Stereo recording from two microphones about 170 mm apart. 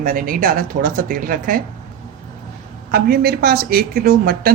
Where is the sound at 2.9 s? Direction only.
65° right (ahead or behind).